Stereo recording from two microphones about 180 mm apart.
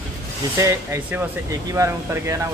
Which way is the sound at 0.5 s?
15° right (ahead or behind).